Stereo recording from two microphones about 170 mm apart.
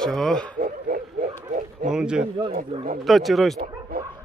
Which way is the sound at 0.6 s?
55° right (ahead or behind).